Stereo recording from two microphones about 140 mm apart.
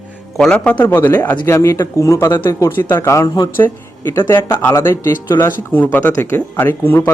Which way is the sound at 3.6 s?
15° left (ahead or behind).